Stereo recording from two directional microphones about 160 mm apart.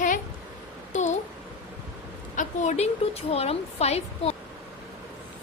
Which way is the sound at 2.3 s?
50° left (ahead or behind).